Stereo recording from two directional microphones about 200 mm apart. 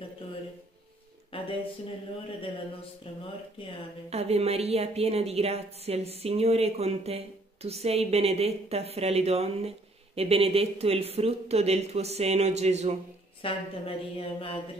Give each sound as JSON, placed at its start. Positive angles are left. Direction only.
{"t": 1.3, "sound": "a sound", "side_deg": 25}
{"t": 4.1, "sound": "a woman's voice", "side_deg": -30}
{"t": 13.4, "sound": "speech", "side_deg": 25}